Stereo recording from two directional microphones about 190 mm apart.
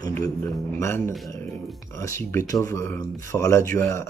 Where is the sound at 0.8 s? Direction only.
15° left (ahead or behind).